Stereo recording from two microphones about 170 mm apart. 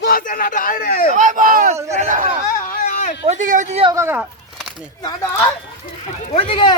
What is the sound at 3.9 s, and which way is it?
Speech, 15° right (ahead or behind).